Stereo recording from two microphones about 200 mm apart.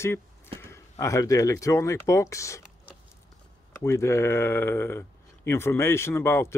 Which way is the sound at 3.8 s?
15° left (ahead or behind).